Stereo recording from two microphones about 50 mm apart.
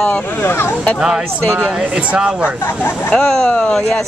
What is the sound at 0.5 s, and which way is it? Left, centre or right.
Speech, left.